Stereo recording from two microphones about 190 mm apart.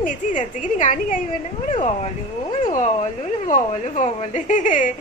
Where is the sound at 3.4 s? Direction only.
40° left (ahead or behind).